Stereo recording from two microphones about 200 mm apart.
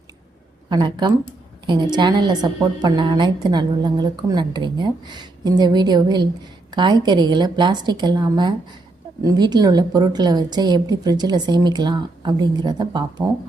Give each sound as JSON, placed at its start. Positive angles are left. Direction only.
{"t": 0.7, "sound": "a woman's voice", "side_deg": -20}